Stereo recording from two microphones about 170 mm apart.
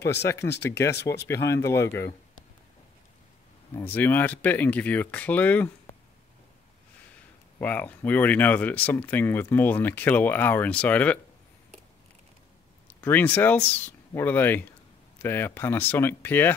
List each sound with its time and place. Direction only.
0.2 s speech: 15° left (ahead or behind)
3.7 s speech: 10° left (ahead or behind)
7.6 s speech: 10° left (ahead or behind)
12.8 s speech: 10° left (ahead or behind)